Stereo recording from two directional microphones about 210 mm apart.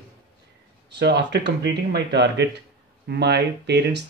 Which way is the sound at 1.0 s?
55° right (ahead or behind).